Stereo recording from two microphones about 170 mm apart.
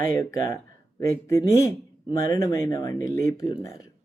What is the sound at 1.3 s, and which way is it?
Speech, 20° left (ahead or behind).